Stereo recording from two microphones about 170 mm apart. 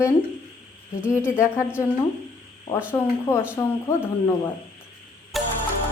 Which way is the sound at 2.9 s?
5° left (ahead or behind).